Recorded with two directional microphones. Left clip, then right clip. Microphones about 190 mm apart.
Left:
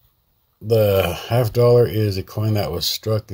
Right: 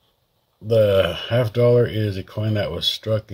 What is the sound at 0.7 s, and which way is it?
Speech, 30° left (ahead or behind).